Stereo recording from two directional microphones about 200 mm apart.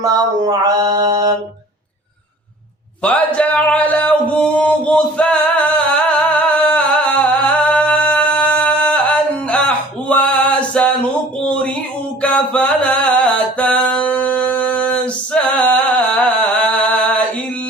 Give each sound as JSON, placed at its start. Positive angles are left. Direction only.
{"t": 0.0, "sound": "mantra", "side_deg": -20}
{"t": 3.0, "sound": "music", "side_deg": 5}
{"t": 11.4, "sound": "a sound", "side_deg": 5}
{"t": 12.2, "sound": "music", "side_deg": 5}